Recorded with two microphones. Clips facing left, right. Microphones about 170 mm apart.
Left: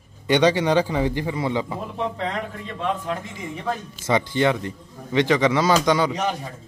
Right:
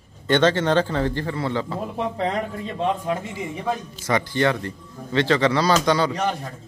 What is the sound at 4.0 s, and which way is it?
A man's voice, 20° left (ahead or behind).